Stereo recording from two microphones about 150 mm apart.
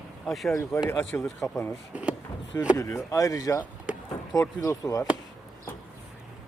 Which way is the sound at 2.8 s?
20° left (ahead or behind).